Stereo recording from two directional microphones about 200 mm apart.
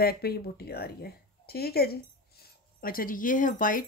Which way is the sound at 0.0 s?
50° left (ahead or behind).